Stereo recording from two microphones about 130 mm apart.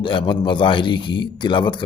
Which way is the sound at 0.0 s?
40° left (ahead or behind).